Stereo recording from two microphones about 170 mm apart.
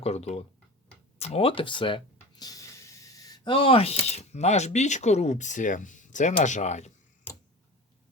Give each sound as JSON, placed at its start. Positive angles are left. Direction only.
{"t": 0.0, "sound": "speech", "side_deg": 40}